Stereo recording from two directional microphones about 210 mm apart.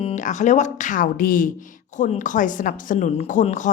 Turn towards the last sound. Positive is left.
turn(degrees=35)  # may be behind; listen again after turning